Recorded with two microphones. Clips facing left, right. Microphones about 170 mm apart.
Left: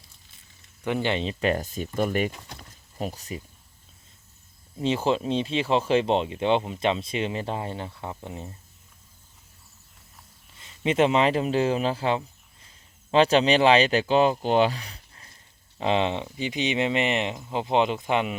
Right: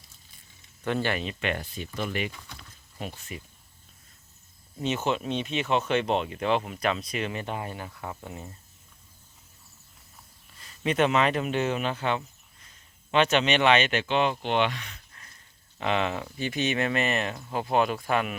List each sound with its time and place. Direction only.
0.9 s speech: 15° left (ahead or behind)
1.2 s speech: 35° left (ahead or behind)
4.8 s speech: 30° left (ahead or behind)
10.6 s speech: 25° left (ahead or behind)